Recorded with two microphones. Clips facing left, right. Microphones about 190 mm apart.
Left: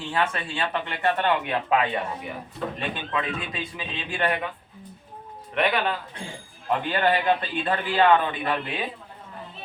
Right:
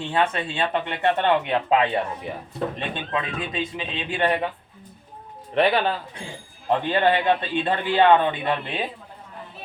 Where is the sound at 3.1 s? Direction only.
25° right (ahead or behind).